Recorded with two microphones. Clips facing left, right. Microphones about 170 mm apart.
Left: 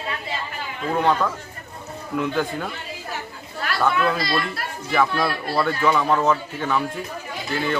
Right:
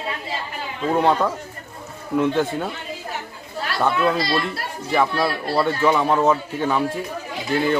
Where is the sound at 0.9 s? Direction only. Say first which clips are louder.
Right 2 dB; 25° right (ahead or behind).